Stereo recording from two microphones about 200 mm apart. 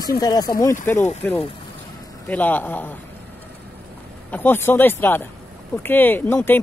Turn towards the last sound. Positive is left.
turn(degrees=10)  # may be behind; listen again after turning